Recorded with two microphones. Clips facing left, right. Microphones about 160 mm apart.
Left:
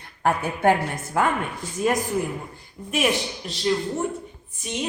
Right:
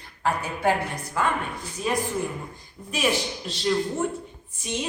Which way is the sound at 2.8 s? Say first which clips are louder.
Left 4 dB; 10° left (ahead or behind).